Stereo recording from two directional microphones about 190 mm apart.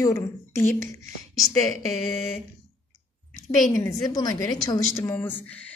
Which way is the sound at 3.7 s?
20° left (ahead or behind).